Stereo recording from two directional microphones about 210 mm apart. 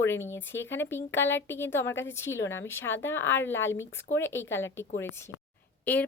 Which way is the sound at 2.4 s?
65° left (ahead or behind).